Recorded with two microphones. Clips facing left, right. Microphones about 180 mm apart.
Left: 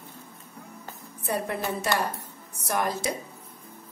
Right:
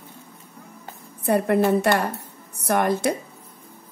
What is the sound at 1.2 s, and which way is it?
A woman's voice, 60° right (ahead or behind).